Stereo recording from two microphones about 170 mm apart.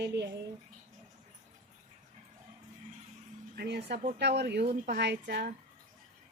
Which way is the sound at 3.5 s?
75° right (ahead or behind).